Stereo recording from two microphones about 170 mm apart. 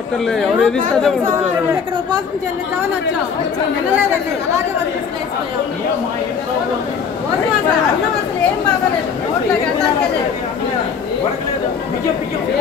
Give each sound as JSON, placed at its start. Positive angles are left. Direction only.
{"t": 0.3, "sound": "speech", "side_deg": 5}
{"t": 1.2, "sound": "speech", "side_deg": -15}